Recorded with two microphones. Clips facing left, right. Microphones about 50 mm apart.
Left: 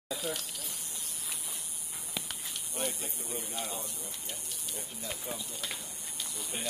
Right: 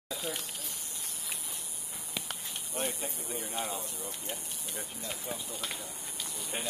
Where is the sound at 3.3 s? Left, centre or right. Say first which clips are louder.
Right 2 dB; right.